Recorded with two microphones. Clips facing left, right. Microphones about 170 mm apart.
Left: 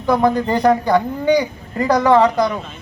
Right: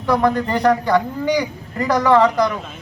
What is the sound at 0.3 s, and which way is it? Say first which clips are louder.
A man's voice: left 2 dB; 20° left (ahead or behind).